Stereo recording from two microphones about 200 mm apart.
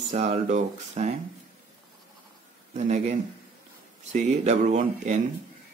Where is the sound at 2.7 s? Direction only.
35° right (ahead or behind).